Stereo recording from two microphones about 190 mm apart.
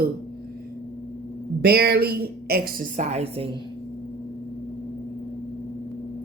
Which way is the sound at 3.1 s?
35° right (ahead or behind).